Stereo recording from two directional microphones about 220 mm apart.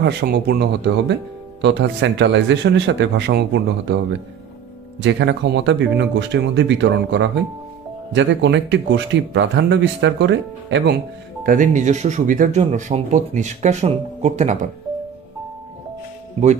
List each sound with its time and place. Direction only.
0.0 s speech: 50° right (ahead or behind)
11.4 s speech: 35° right (ahead or behind)